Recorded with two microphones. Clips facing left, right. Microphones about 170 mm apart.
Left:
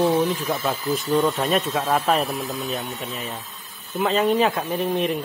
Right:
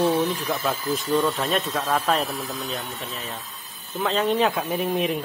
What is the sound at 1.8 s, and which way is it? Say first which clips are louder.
Speech: left 1 dB; 20° left (ahead or behind).